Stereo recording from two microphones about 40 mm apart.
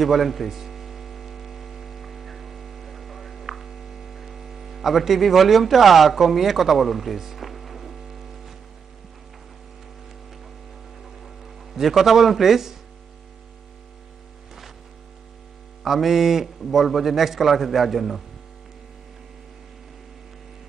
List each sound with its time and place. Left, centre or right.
0.0 s hum: centre
11.2 s speech: centre
15.8 s a man's voice: centre